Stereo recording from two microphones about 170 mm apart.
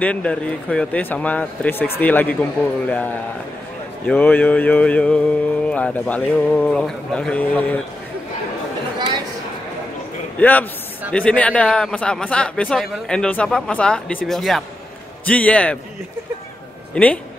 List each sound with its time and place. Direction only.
0.0 s mantra: 5° left (ahead or behind)
8.9 s chatter: 25° right (ahead or behind)
10.4 s mantra: 10° left (ahead or behind)
11.1 s a man's voice: 5° left (ahead or behind)
15.2 s mantra: 10° left (ahead or behind)
16.9 s mantra: 10° left (ahead or behind)